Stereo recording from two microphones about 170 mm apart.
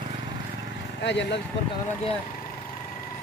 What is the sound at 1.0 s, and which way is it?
Speech, 90° left.